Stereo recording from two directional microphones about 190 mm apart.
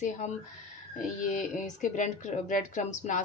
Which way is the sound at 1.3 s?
40° left (ahead or behind).